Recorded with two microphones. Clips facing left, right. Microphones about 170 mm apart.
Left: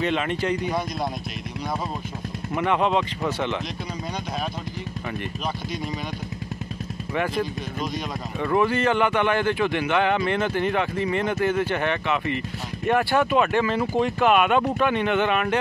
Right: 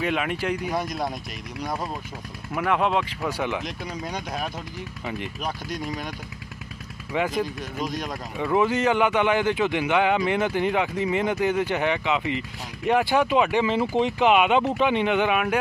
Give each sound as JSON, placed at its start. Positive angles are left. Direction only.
{"t": 0.0, "sound": "speech", "side_deg": -5}
{"t": 2.5, "sound": "speech", "side_deg": 0}
{"t": 7.2, "sound": "speech", "side_deg": -15}